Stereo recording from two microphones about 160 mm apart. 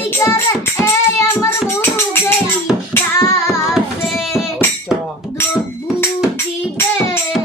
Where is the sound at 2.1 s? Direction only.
15° left (ahead or behind).